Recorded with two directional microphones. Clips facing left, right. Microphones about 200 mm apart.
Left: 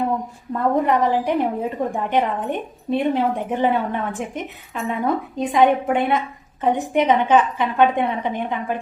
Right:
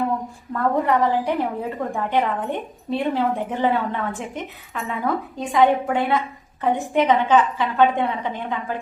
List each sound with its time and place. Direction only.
0.5 s a woman's voice: 20° left (ahead or behind)